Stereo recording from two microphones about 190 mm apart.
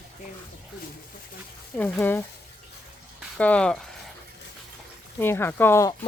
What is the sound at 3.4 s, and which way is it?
Speech, 5° left (ahead or behind).